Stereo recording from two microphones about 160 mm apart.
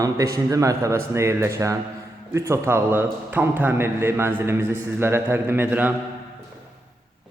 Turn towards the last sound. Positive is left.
turn(degrees=-10)  # may be behind; listen again after turning